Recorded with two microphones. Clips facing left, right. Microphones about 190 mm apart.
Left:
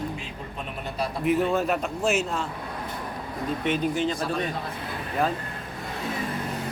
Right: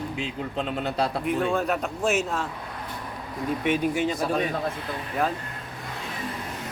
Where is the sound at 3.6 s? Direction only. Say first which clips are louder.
Right 1 dB; 10° right (ahead or behind).